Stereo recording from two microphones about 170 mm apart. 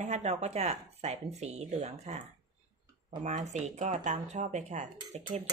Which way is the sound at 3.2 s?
40° right (ahead or behind).